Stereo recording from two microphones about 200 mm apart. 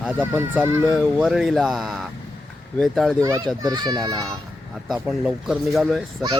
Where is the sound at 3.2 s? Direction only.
15° right (ahead or behind).